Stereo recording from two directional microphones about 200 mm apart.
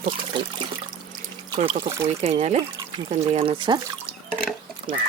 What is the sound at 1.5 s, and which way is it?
Speech, 30° right (ahead or behind).